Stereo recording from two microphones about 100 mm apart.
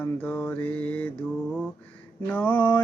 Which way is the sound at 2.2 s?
20° left (ahead or behind).